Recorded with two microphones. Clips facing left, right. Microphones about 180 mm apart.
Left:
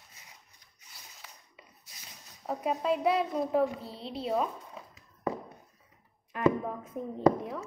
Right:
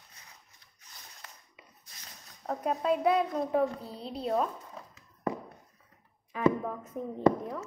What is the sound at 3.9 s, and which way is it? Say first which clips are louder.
Speech: even; 45° right (ahead or behind).